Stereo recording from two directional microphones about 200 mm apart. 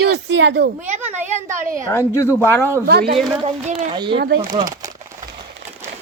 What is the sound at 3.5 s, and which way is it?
Speech, 35° right (ahead or behind).